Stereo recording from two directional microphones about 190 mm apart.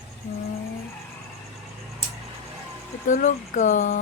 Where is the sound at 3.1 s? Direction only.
40° left (ahead or behind).